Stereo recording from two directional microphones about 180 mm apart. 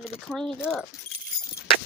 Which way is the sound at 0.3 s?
5° left (ahead or behind).